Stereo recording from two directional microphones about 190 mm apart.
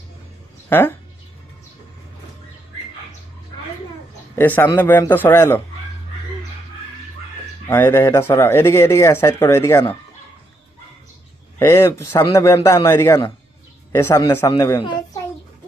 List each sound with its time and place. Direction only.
0.7 s speech: 10° left (ahead or behind)
4.4 s speech: 10° left (ahead or behind)
7.7 s speech: 15° left (ahead or behind)
11.6 s speech: 15° left (ahead or behind)